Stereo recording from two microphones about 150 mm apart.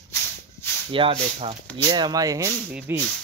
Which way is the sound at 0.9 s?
35° right (ahead or behind).